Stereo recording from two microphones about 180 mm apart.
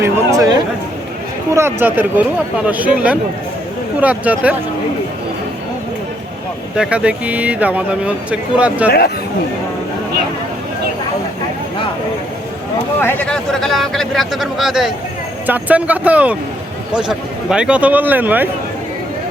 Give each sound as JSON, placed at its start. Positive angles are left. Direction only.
{"t": 0.3, "sound": "a sound", "side_deg": -20}
{"t": 1.5, "sound": "speech", "side_deg": -10}
{"t": 6.7, "sound": "speech", "side_deg": -5}
{"t": 8.9, "sound": "speech", "side_deg": 60}
{"t": 13.0, "sound": "a man's voice", "side_deg": 10}